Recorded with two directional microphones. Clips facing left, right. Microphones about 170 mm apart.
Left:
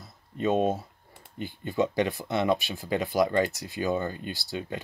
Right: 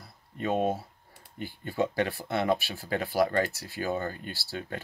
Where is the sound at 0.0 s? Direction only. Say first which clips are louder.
Left 5 dB; 20° left (ahead or behind).